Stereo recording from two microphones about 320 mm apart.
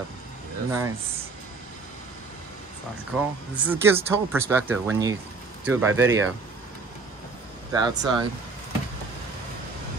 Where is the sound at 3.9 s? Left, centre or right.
Centre.